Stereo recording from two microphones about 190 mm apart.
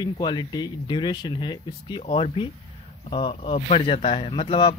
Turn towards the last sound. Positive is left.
turn(degrees=30)  # may be behind; listen again after turning